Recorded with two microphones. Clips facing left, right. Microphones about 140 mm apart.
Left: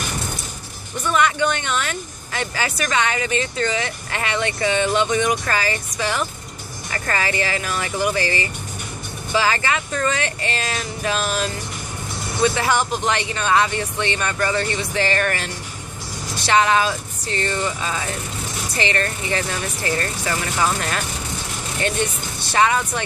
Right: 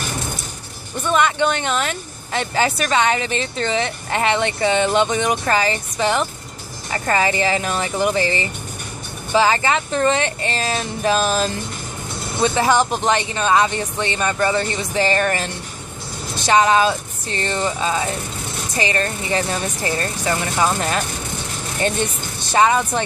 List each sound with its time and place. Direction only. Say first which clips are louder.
1.1 s speech: right 2 dB; 25° right (ahead or behind)
22.4 s speech: right 3 dB; 20° right (ahead or behind)